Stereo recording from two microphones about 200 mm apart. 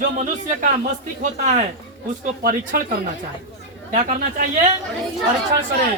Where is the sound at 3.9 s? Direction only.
40° right (ahead or behind).